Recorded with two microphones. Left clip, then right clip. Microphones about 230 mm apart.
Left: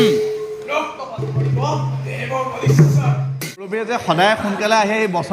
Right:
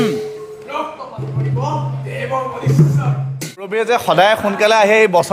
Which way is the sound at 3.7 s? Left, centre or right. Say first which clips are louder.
Right 5 dB; right.